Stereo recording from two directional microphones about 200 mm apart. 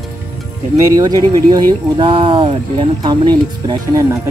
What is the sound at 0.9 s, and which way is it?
Speech, 20° right (ahead or behind).